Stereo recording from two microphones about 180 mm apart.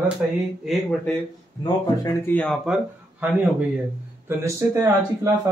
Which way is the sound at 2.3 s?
5° left (ahead or behind).